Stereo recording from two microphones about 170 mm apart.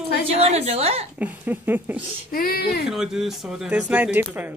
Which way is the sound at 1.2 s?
10° right (ahead or behind).